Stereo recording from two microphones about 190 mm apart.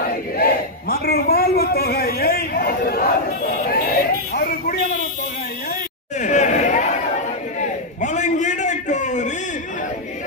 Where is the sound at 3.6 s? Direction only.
50° left (ahead or behind).